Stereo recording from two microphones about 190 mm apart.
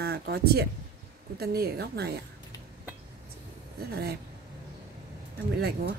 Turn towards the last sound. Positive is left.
turn(degrees=-55)  # may be behind; listen again after turning